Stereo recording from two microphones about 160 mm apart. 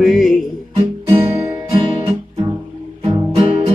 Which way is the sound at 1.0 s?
25° right (ahead or behind).